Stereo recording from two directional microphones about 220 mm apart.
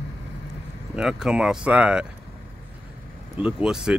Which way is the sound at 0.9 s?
5° right (ahead or behind).